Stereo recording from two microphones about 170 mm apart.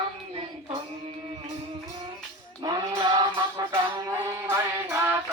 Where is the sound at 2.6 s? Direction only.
25° right (ahead or behind).